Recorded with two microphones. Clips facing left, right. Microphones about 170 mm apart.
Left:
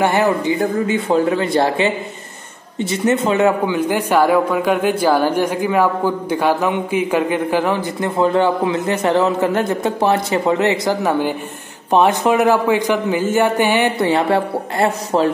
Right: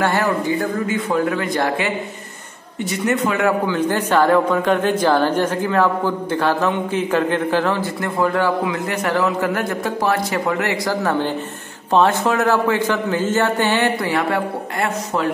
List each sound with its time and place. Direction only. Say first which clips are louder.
0.0 s a man's voice: left 3 dB; 20° left (ahead or behind)
3.7 s speech: left 1 dB; 10° left (ahead or behind); by 15.2 s 30° left (ahead or behind)